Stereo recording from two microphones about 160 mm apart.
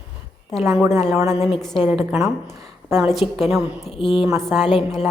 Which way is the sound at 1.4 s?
35° left (ahead or behind).